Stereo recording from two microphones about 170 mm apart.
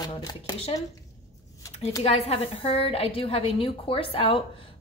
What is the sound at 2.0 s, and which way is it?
A woman's voice, 40° left (ahead or behind).